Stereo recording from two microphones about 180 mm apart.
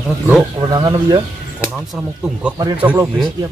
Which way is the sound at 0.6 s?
20° right (ahead or behind).